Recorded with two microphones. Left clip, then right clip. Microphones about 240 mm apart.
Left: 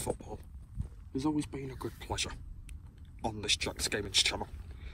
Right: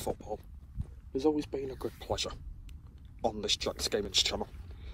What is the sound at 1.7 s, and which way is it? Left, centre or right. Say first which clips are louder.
Speech: right 3 dB; right.